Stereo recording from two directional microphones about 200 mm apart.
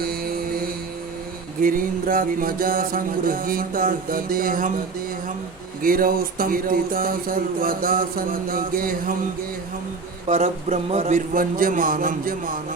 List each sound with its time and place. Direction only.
0.0 s music: 50° right (ahead or behind)
1.6 s speech: 45° right (ahead or behind)
5.8 s speech: 45° right (ahead or behind)
10.2 s speech: 35° right (ahead or behind)